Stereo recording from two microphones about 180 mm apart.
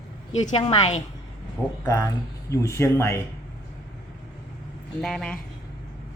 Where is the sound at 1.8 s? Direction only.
15° left (ahead or behind).